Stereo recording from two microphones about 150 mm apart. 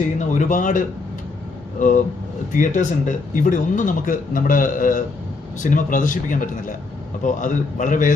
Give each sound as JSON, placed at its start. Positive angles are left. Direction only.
{"t": 0.2, "sound": "speech", "side_deg": 55}